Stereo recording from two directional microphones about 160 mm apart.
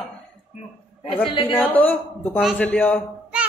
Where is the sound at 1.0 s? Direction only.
35° left (ahead or behind).